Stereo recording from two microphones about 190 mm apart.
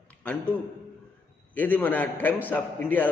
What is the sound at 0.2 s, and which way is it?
Speech, 5° left (ahead or behind).